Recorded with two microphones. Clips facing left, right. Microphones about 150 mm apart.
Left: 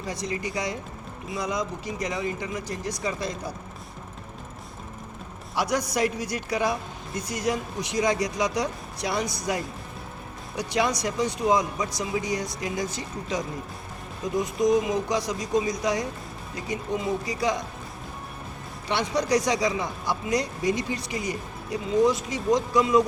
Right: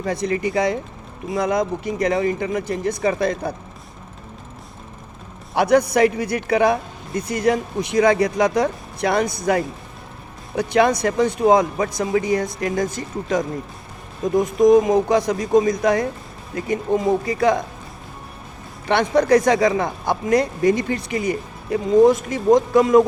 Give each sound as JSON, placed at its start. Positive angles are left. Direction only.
{"t": 0.0, "sound": "speech", "side_deg": -55}
{"t": 5.5, "sound": "speech", "side_deg": -60}
{"t": 18.9, "sound": "speech", "side_deg": -55}